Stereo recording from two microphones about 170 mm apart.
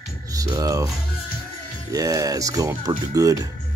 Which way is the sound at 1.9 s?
20° right (ahead or behind).